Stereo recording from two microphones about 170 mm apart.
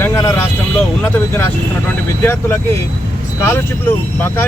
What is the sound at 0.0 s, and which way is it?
Vehicle, 20° left (ahead or behind).